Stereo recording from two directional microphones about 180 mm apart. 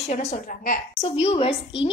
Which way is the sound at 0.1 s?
40° left (ahead or behind).